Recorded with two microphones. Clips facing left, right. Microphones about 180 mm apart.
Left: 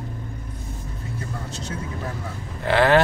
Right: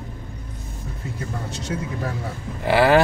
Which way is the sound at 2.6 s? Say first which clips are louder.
Right 1 dB; 10° right (ahead or behind).